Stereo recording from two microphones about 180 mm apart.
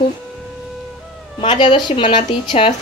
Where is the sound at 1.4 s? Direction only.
25° left (ahead or behind).